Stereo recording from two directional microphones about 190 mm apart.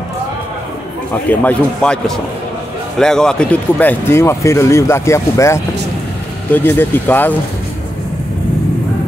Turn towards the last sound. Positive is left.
turn(degrees=10)  # may be behind; listen again after turning